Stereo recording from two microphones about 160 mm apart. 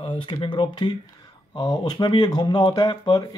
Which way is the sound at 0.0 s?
30° left (ahead or behind).